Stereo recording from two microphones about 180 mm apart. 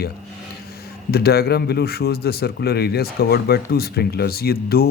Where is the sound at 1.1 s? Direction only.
60° left (ahead or behind).